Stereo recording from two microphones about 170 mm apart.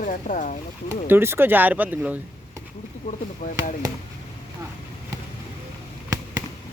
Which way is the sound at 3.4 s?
45° left (ahead or behind).